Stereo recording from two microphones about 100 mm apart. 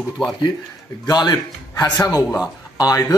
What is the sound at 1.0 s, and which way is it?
Speech, 40° left (ahead or behind).